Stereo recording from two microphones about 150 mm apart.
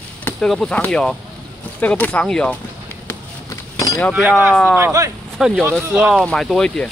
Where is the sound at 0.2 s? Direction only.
5° left (ahead or behind).